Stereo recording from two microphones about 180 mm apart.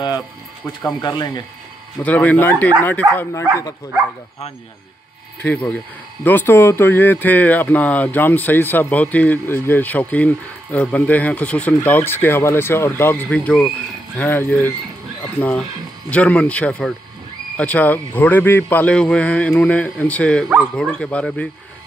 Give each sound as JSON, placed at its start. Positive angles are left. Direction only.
{"t": 0.8, "sound": "speech", "side_deg": 20}
{"t": 2.0, "sound": "speech", "side_deg": 10}
{"t": 5.5, "sound": "speech", "side_deg": 5}